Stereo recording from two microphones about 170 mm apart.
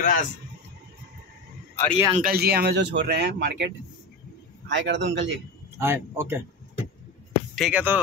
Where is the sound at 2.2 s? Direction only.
65° right (ahead or behind); by 5.3 s 90° right.